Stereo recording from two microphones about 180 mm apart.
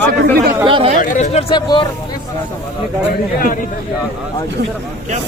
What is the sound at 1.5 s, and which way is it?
Speech, 25° left (ahead or behind).